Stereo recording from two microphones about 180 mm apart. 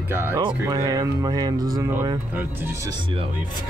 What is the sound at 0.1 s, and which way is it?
Speech, 10° right (ahead or behind).